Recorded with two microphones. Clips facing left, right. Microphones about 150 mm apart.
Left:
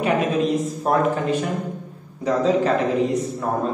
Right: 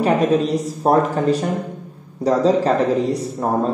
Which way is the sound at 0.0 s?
35° right (ahead or behind).